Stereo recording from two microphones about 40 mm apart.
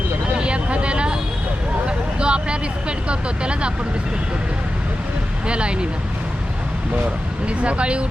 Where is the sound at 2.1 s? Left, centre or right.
Right.